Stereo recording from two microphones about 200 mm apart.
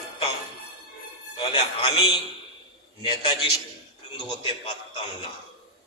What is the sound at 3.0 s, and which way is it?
Speech, 25° left (ahead or behind).